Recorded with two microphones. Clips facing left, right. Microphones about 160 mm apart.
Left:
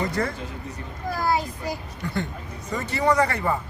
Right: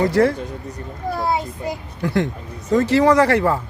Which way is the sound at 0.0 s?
80° right.